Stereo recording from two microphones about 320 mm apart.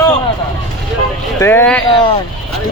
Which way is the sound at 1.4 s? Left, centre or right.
Centre.